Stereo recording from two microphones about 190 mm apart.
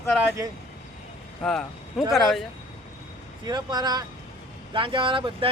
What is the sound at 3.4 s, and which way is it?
Speech, 20° right (ahead or behind).